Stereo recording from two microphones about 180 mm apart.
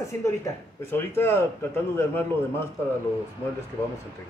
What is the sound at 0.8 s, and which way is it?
Speech, 10° left (ahead or behind).